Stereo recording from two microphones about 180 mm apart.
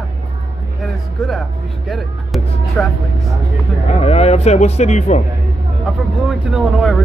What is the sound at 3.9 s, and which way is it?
Speech, 35° left (ahead or behind).